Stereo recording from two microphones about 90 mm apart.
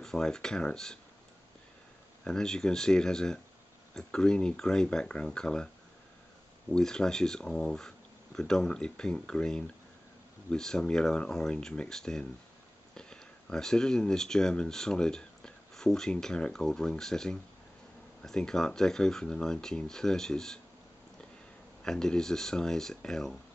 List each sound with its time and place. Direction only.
0.0 s speech: 5° left (ahead or behind)
2.2 s speech: 5° left (ahead or behind)
6.7 s speech: 5° left (ahead or behind)
21.8 s speech: 5° left (ahead or behind)